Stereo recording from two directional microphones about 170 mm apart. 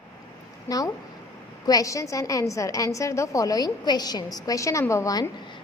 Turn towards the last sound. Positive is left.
turn(degrees=20)  # may be behind; listen again after turning